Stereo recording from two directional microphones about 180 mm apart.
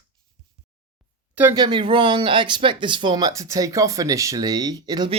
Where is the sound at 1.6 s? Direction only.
25° right (ahead or behind).